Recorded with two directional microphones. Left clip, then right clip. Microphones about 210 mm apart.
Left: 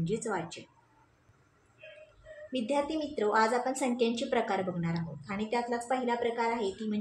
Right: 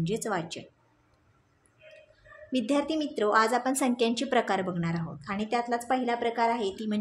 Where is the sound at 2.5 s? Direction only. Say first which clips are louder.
Right 3 dB; 55° right (ahead or behind).